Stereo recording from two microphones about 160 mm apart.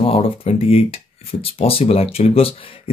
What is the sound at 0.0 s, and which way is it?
Speech, 35° left (ahead or behind).